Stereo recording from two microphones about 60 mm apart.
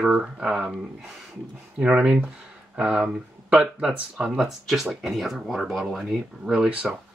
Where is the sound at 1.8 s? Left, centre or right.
Centre.